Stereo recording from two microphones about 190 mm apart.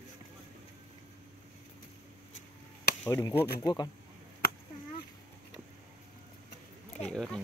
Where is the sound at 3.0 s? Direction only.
15° left (ahead or behind).